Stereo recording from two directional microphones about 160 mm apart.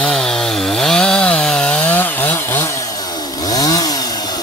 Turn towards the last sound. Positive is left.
turn(degrees=25)  # may be behind; listen again after turning